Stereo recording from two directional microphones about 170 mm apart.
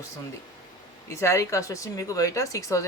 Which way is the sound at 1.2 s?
15° left (ahead or behind).